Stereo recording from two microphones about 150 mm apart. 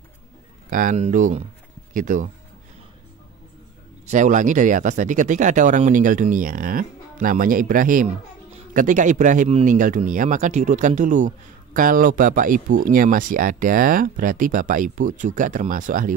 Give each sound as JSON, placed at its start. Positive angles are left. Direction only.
{"t": 0.7, "sound": "speech", "side_deg": -65}
{"t": 4.1, "sound": "speech", "side_deg": -55}